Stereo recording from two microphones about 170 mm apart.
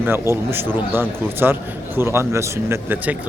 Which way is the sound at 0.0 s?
15° right (ahead or behind).